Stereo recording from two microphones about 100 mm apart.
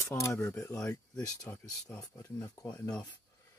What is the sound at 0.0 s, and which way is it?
Speech, 30° left (ahead or behind).